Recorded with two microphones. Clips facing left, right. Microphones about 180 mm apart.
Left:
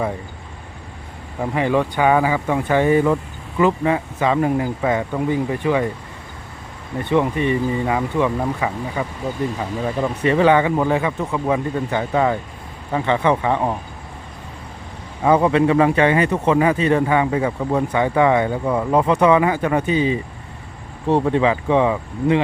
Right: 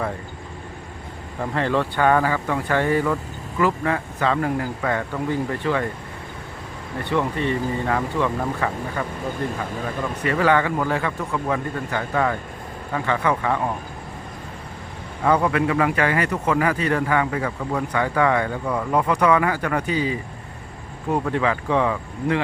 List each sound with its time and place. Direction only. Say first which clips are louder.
1.4 s speech: left 3 dB; 15° left (ahead or behind)
7.0 s speech: left 4 dB; 20° left (ahead or behind)
10.2 s speech: left 4 dB; 20° left (ahead or behind)
15.2 s speech: left 4 dB; 20° left (ahead or behind)